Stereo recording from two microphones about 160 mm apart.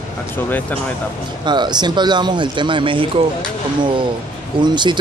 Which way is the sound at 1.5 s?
25° right (ahead or behind).